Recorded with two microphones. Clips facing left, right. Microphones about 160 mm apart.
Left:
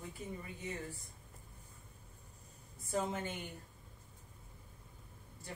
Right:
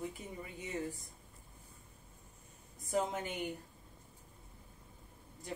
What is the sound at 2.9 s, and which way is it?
Speech, 15° right (ahead or behind).